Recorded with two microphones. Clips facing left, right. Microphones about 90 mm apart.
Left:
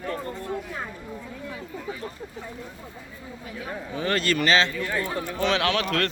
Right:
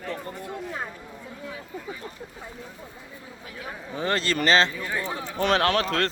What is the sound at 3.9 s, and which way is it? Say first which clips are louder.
Speech: left 1 dB; 30° right (ahead or behind).